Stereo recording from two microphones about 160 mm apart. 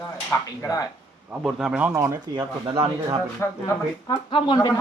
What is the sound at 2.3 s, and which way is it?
Speech, 30° right (ahead or behind).